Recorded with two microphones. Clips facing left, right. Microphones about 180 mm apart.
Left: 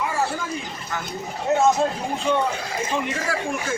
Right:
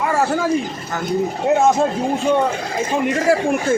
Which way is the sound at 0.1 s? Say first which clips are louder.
Right 8 dB; 80° right.